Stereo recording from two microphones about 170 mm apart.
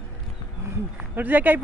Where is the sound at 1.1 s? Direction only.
10° right (ahead or behind).